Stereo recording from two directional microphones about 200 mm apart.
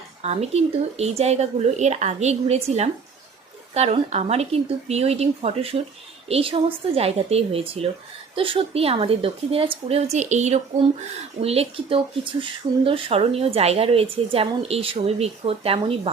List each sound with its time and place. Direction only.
0.2 s speech: 30° right (ahead or behind)